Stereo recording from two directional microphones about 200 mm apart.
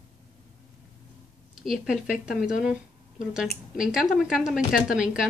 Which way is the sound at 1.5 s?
Centre (ahead or behind).